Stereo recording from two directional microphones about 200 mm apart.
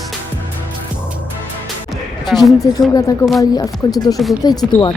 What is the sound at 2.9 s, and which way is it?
Speech, 15° left (ahead or behind).